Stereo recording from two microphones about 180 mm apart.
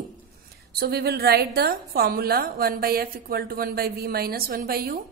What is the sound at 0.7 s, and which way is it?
A woman's voice, 60° right (ahead or behind).